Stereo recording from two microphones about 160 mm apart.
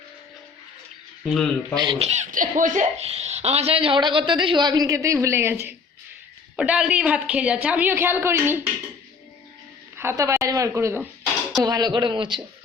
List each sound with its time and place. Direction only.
1.2 s speech: centre (ahead or behind)
1.7 s a man's voice: 25° right (ahead or behind)
2.0 s a woman's voice: 45° right (ahead or behind); by 5.5 s 15° right (ahead or behind)
6.6 s a woman's voice: 5° right (ahead or behind)
10.0 s a woman's voice: 15° right (ahead or behind)